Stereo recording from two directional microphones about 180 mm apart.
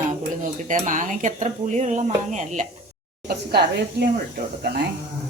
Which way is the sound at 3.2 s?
60° right (ahead or behind).